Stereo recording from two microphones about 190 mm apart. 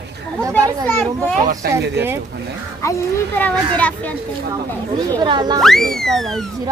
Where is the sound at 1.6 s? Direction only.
55° right (ahead or behind).